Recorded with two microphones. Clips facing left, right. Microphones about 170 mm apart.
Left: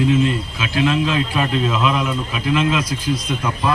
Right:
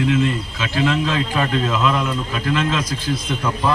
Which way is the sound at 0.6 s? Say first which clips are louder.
Left 1 dB; 15° left (ahead or behind).